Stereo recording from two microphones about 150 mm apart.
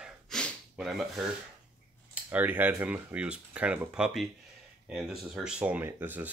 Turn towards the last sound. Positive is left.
turn(degrees=-15)  # may be behind; listen again after turning